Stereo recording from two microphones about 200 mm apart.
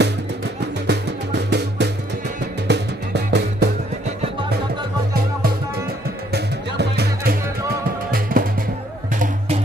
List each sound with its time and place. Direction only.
0.8 s music: 60° right (ahead or behind)
6.3 s music: 55° right (ahead or behind)